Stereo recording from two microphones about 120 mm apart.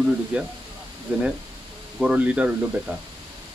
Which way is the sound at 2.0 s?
10° right (ahead or behind).